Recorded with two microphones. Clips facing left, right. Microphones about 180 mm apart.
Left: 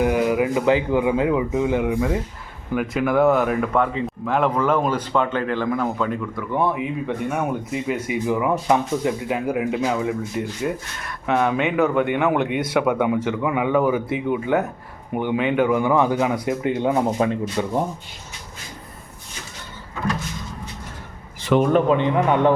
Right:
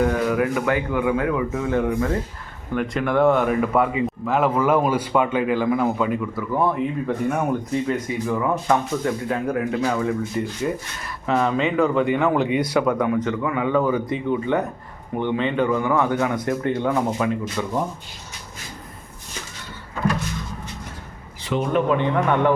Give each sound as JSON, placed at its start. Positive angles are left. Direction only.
{"t": 0.0, "sound": "speech", "side_deg": 15}
{"t": 17.2, "sound": "speech", "side_deg": 35}
{"t": 21.7, "sound": "speech", "side_deg": 40}
{"t": 21.9, "sound": "a man's voice", "side_deg": 20}